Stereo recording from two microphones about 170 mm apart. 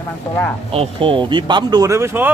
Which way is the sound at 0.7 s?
30° right (ahead or behind).